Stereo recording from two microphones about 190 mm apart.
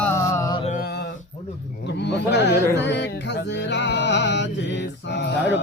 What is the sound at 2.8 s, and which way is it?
Music, 65° left (ahead or behind).